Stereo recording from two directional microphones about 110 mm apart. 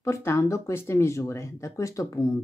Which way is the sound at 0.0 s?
25° left (ahead or behind).